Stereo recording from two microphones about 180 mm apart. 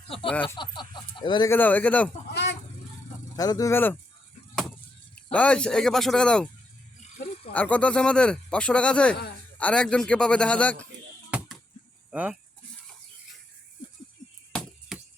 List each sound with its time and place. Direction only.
0.5 s chicken: 25° left (ahead or behind)
1.5 s speech: 10° left (ahead or behind)
2.3 s a sound: 70° left (ahead or behind)
3.3 s speech: 20° left (ahead or behind)
5.3 s speech: 5° left (ahead or behind)
7.5 s speech: 10° left (ahead or behind)
11.3 s a sound: 5° right (ahead or behind)
12.1 s speech: 5° right (ahead or behind)